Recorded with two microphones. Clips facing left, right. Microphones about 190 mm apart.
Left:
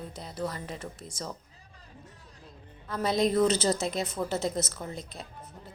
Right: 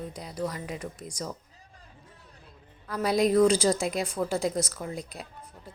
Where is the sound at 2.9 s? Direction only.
5° right (ahead or behind).